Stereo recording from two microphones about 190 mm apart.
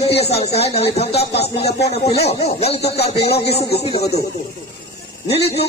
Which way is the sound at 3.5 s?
60° left (ahead or behind).